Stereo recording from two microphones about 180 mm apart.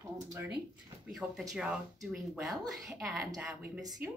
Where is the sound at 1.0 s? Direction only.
5° right (ahead or behind).